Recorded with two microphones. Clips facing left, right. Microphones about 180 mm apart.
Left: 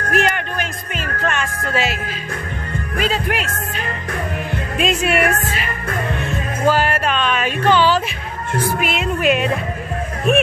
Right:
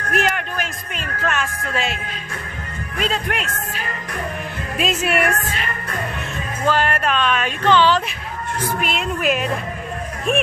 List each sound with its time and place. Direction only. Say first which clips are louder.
0.1 s music: left 2 dB; centre (ahead or behind)
3.0 s a woman's voice: left 2 dB; 5° left (ahead or behind)
6.6 s music: left 2 dB; 5° left (ahead or behind)